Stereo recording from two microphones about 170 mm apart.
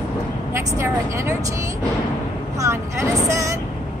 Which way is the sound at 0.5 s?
15° right (ahead or behind).